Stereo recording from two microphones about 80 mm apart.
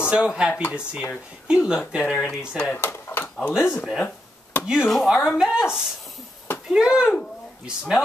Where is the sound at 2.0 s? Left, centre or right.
Centre.